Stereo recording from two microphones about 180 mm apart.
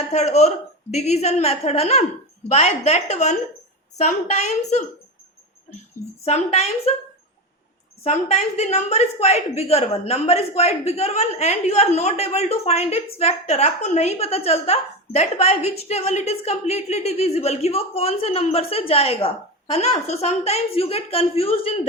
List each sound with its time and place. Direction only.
0.1 s a woman's voice: 40° left (ahead or behind)
6.2 s a woman's voice: 35° left (ahead or behind)
8.0 s a woman's voice: 35° left (ahead or behind)